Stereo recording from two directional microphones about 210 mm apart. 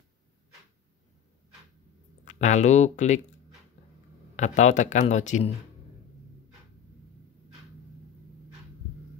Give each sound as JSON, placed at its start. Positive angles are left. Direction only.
{"t": 2.2, "sound": "speech", "side_deg": 35}
{"t": 3.8, "sound": "a sound", "side_deg": 30}
{"t": 4.4, "sound": "speech", "side_deg": 35}